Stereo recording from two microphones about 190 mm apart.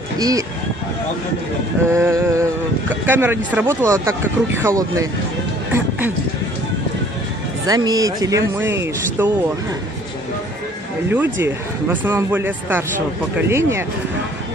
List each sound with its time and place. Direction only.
0.2 s speech: 20° right (ahead or behind)
1.9 s speech: 15° right (ahead or behind)
7.6 s speech: 20° right (ahead or behind)
11.1 s speech: 10° right (ahead or behind)